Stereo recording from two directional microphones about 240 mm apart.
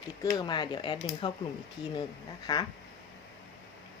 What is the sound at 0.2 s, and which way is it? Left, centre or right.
Speech, centre.